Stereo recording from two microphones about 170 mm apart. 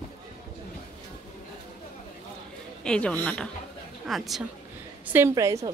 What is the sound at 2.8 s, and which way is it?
Speech, 5° left (ahead or behind).